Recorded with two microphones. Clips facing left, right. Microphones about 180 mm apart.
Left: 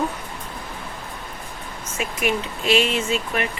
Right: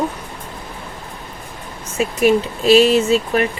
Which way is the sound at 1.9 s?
35° right (ahead or behind).